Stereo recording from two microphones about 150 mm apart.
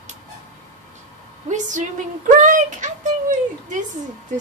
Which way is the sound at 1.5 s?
55° right (ahead or behind).